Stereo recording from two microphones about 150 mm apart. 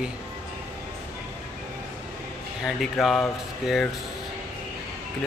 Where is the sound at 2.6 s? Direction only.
Centre (ahead or behind).